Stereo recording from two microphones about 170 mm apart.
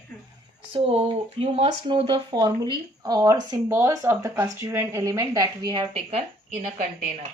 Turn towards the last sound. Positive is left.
turn(degrees=-40)  # may be behind; listen again after turning